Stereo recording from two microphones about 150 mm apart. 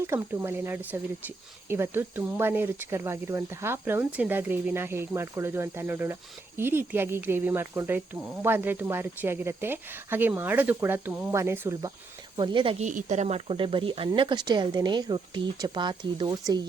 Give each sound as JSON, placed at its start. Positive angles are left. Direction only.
{"t": 0.1, "sound": "speech", "side_deg": -15}
{"t": 12.4, "sound": "speech", "side_deg": -30}
{"t": 12.8, "sound": "speech", "side_deg": -55}